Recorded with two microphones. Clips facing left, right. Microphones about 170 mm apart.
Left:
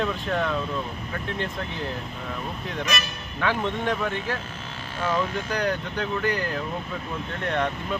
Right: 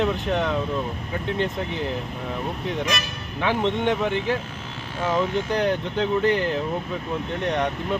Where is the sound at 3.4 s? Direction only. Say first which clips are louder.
Right 3 dB; 20° right (ahead or behind).